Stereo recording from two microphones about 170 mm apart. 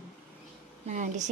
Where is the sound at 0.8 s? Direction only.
45° right (ahead or behind).